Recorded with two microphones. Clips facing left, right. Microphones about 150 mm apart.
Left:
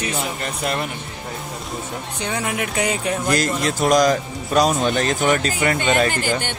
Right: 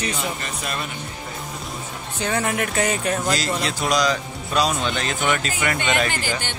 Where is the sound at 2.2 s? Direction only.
10° left (ahead or behind).